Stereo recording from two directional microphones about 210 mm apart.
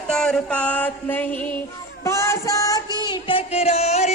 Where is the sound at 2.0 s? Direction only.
15° left (ahead or behind).